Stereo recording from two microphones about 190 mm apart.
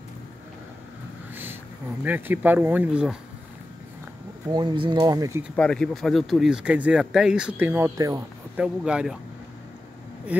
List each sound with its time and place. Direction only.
1.3 s a sound: 10° right (ahead or behind)
2.0 s speech: 10° right (ahead or behind)
4.5 s speech: 20° right (ahead or behind)
5.6 s speech: 5° left (ahead or behind); by 8.6 s 15° right (ahead or behind)
8.6 s speech: 5° right (ahead or behind)